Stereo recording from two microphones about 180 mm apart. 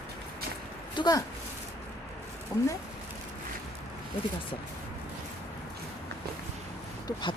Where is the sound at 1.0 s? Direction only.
25° left (ahead or behind).